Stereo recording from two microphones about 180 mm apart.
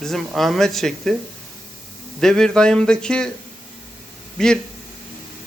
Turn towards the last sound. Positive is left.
turn(degrees=5)  # may be behind; listen again after turning